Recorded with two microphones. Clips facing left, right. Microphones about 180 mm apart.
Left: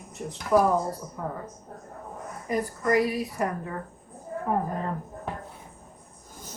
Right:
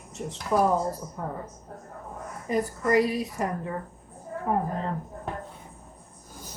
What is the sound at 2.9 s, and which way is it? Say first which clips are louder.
Speech: right 1 dB; 20° right (ahead or behind).